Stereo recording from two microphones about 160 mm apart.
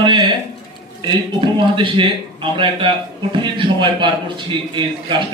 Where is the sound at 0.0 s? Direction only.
30° right (ahead or behind).